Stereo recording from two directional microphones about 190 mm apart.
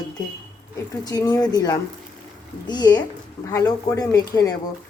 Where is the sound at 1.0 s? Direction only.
20° left (ahead or behind).